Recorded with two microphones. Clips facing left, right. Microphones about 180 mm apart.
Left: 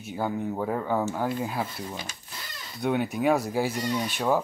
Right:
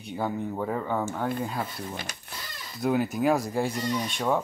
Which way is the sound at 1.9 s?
65° right (ahead or behind).